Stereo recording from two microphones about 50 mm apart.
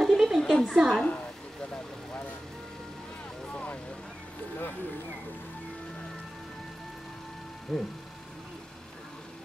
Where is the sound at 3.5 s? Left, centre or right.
Left.